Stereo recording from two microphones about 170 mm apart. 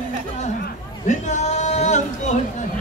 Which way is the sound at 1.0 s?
45° left (ahead or behind).